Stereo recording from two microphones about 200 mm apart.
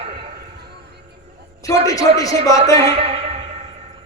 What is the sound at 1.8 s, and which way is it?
Speech, 15° left (ahead or behind).